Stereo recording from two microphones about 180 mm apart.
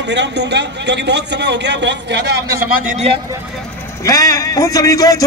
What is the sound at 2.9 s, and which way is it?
Speech, 35° right (ahead or behind).